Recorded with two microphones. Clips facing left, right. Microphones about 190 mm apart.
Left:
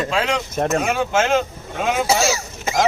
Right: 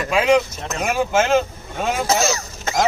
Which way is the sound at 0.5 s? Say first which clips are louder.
Left 10 dB; 55° left (ahead or behind).